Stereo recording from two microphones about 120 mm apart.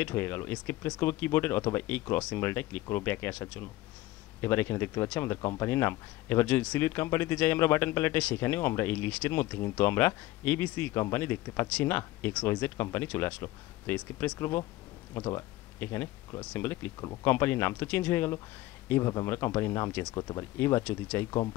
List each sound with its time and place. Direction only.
0.0 s speech: 20° left (ahead or behind)
20.2 s speech: 30° left (ahead or behind)
20.5 s speech: 20° left (ahead or behind)